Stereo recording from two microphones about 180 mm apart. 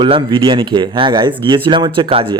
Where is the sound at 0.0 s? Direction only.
25° right (ahead or behind).